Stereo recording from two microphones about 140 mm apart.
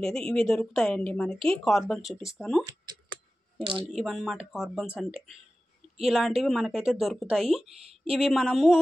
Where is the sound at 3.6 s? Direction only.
40° right (ahead or behind).